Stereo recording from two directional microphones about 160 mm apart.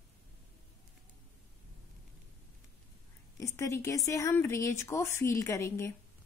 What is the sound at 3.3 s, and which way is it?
A woman's voice, 20° left (ahead or behind).